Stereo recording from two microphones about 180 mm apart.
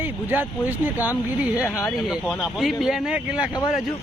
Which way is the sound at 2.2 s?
Centre (ahead or behind).